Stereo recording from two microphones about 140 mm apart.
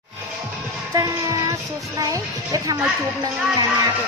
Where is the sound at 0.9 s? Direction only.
20° right (ahead or behind).